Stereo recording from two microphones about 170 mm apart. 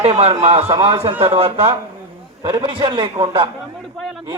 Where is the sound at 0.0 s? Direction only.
35° right (ahead or behind).